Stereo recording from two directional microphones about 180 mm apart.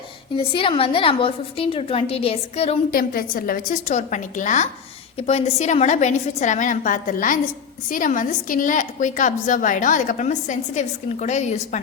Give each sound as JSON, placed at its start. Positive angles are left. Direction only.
{"t": 0.3, "sound": "a woman's voice", "side_deg": 30}
{"t": 2.9, "sound": "a woman's voice", "side_deg": 55}